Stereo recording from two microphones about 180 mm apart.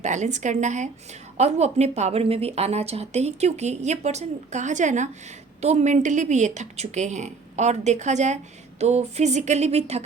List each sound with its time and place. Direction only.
0.0 s speech: 40° right (ahead or behind)